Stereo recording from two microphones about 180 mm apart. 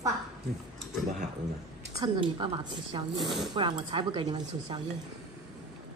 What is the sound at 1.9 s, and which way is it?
Speech, 25° right (ahead or behind).